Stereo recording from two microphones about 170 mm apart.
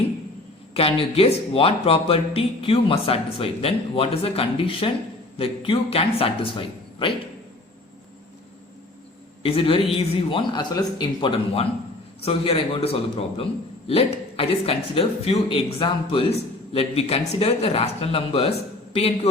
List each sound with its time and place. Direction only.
0.7 s speech: 35° left (ahead or behind)
9.4 s speech: 35° left (ahead or behind)